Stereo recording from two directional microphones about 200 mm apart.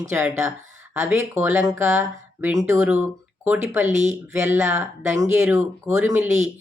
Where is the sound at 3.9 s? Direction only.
35° right (ahead or behind).